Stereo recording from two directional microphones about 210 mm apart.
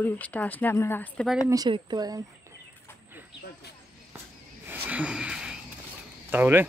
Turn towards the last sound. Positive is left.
turn(degrees=-10)  # may be behind; listen again after turning